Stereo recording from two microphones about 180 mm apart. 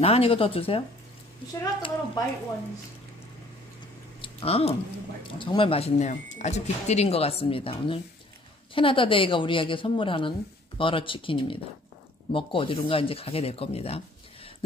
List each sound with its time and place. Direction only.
0.0 s speech: 30° left (ahead or behind)
1.6 s a woman's voice: 20° left (ahead or behind)
4.2 s a sound: 30° left (ahead or behind)
5.4 s a woman's voice: 30° left (ahead or behind)